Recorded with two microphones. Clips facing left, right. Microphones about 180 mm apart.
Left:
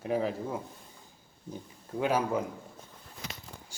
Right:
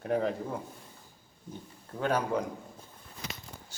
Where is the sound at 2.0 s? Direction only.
5° left (ahead or behind).